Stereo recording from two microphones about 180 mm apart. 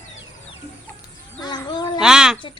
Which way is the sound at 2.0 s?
5° right (ahead or behind).